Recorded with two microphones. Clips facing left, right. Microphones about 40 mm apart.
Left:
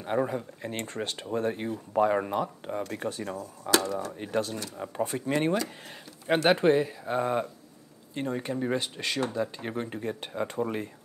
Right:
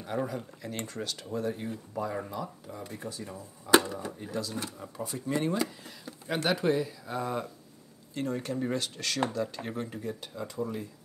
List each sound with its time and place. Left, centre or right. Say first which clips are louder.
0.0 s speech: left 5 dB; left
3.7 s speech: right 2 dB; right
4.2 s speech: left 4 dB; left